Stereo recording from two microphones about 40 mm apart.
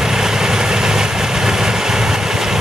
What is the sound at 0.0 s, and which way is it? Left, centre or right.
Vehicle, centre.